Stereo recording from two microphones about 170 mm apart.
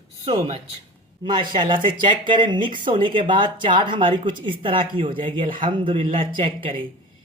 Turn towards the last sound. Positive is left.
turn(degrees=-30)  # may be behind; listen again after turning